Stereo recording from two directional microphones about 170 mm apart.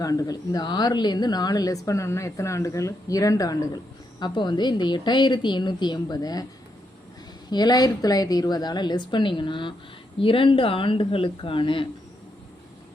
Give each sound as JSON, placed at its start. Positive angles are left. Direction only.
{"t": 0.0, "sound": "speech", "side_deg": 20}
{"t": 7.5, "sound": "speech", "side_deg": 25}